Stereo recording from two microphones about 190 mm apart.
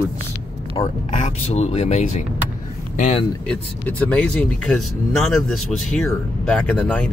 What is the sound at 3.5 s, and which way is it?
Speech, 10° left (ahead or behind).